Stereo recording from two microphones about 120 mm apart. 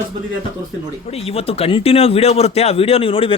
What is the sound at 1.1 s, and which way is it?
Speech, 55° left (ahead or behind).